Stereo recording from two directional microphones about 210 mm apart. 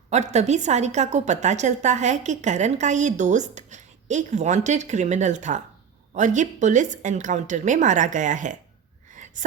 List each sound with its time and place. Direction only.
0.1 s a woman's voice: 30° right (ahead or behind)
9.1 s gasp: 35° right (ahead or behind)